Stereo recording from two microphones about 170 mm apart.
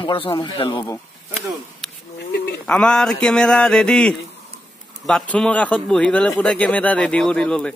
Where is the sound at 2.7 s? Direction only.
5° left (ahead or behind).